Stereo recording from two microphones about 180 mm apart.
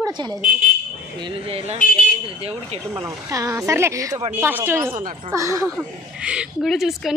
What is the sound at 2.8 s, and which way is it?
Speech, 15° right (ahead or behind).